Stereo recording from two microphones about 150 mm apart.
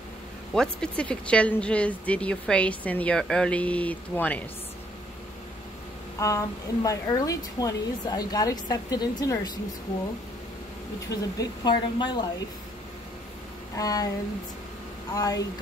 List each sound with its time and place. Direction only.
0.6 s speech: 5° left (ahead or behind)
6.1 s speech: 20° left (ahead or behind)
11.1 s speech: 25° left (ahead or behind)
13.7 s speech: 25° left (ahead or behind)
15.1 s speech: 25° left (ahead or behind)